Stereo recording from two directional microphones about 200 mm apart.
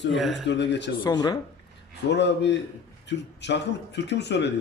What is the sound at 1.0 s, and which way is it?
Speech, 20° left (ahead or behind).